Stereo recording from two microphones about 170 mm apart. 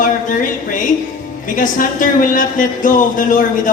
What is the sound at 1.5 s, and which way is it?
A woman's voice, 50° left (ahead or behind).